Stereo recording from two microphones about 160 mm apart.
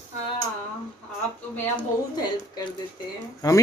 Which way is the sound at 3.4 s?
20° left (ahead or behind).